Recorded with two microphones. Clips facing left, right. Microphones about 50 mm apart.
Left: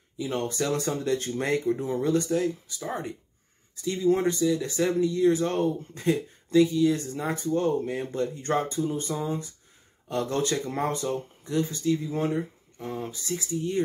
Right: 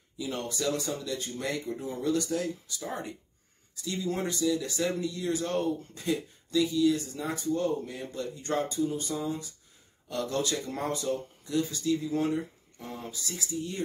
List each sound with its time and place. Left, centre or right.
0.2 s speech: left
2.3 s speech: centre